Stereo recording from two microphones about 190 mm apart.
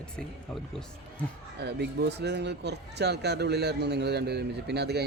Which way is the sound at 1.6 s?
60° right (ahead or behind).